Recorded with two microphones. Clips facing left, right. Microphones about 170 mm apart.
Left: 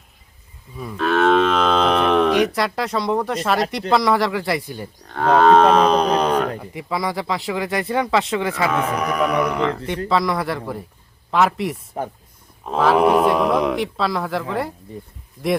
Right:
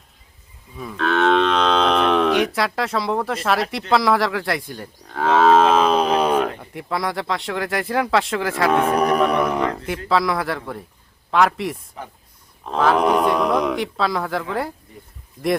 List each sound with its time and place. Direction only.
0.8 s moo: centre (ahead or behind)
2.6 s speech: centre (ahead or behind)
9.0 s speech: 30° right (ahead or behind)
9.4 s speech: 20° right (ahead or behind); by 14.7 s centre (ahead or behind)